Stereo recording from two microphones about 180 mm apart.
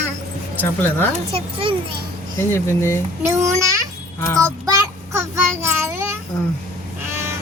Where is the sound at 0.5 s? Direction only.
10° left (ahead or behind).